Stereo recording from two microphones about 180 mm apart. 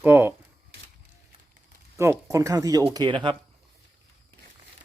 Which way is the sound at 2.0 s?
15° right (ahead or behind).